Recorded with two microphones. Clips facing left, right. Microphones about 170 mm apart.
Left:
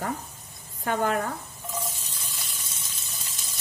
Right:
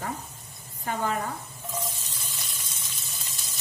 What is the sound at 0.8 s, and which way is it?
Speech, 60° left (ahead or behind).